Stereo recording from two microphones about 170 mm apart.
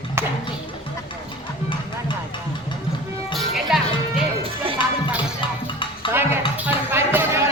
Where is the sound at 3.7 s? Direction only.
5° right (ahead or behind).